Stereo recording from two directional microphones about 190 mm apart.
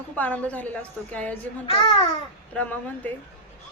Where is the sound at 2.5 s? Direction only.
10° left (ahead or behind).